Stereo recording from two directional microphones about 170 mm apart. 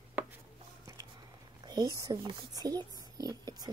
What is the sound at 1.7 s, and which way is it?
Speech, 25° right (ahead or behind).